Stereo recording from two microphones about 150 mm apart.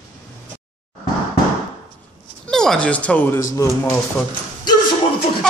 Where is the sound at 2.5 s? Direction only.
5° left (ahead or behind).